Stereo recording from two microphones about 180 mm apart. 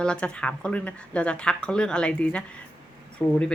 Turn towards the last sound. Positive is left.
turn(degrees=15)  # may be behind; listen again after turning